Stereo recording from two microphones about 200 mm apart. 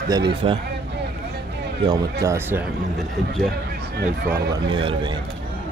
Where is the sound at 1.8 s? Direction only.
15° right (ahead or behind).